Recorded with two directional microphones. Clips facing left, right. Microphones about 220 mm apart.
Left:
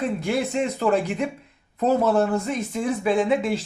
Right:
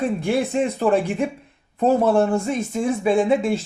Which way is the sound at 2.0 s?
30° right (ahead or behind).